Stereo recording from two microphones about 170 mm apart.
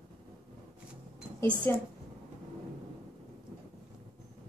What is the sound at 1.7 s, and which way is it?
Speech, 15° left (ahead or behind).